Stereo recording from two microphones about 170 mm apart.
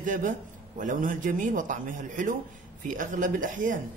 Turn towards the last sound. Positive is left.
turn(degrees=-50)  # may be behind; listen again after turning